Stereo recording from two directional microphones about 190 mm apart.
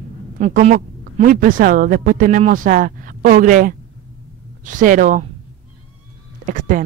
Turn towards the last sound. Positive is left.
turn(degrees=-45)  # may be behind; listen again after turning